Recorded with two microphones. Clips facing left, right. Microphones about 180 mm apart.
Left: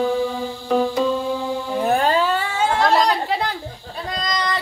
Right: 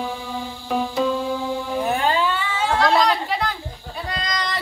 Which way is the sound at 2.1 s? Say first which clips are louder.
Left 2 dB; 40° left (ahead or behind).